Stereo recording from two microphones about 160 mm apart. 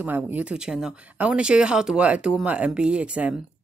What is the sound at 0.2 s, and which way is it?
Speech, 10° right (ahead or behind).